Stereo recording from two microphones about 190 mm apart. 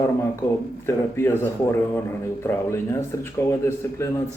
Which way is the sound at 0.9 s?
10° left (ahead or behind).